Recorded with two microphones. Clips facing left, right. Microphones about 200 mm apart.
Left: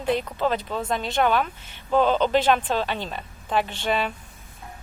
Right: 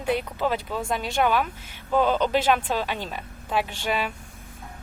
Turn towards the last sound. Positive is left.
turn(degrees=-10)  # may be behind; listen again after turning